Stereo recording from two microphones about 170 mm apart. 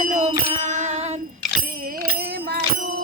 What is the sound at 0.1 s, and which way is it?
Music, 45° right (ahead or behind).